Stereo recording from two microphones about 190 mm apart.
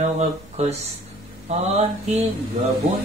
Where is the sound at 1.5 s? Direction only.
35° right (ahead or behind).